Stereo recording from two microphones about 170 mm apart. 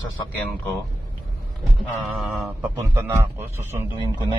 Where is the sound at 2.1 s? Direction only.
Centre (ahead or behind).